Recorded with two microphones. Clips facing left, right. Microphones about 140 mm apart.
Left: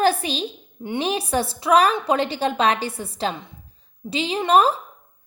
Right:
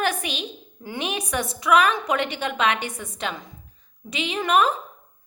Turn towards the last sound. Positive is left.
turn(degrees=35)  # may be behind; listen again after turning